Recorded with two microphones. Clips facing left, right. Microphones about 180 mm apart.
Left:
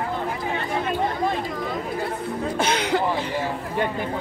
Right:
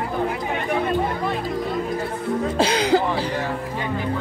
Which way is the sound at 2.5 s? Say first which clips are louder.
Right 4 dB; 30° right (ahead or behind).